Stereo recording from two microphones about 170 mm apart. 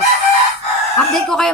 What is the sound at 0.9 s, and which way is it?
Speech, 5° left (ahead or behind).